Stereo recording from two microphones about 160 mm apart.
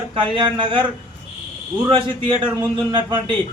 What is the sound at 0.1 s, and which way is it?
Speech, 30° right (ahead or behind).